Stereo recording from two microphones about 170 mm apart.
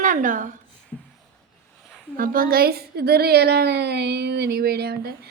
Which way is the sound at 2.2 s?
55° right (ahead or behind).